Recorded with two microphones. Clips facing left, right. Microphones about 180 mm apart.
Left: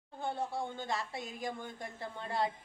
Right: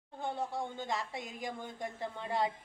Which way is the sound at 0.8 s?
20° right (ahead or behind).